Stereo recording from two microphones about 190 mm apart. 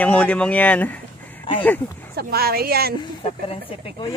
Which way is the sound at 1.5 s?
25° left (ahead or behind).